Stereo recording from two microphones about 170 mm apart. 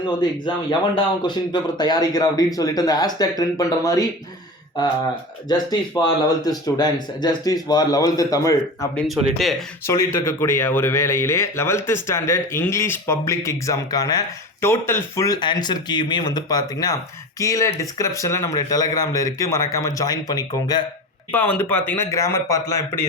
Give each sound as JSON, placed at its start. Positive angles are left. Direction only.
{"t": 0.2, "sound": "speech", "side_deg": 25}
{"t": 6.0, "sound": "speech", "side_deg": 20}
{"t": 9.0, "sound": "speech", "side_deg": 0}
{"t": 9.8, "sound": "speech", "side_deg": 15}
{"t": 21.3, "sound": "speech", "side_deg": 10}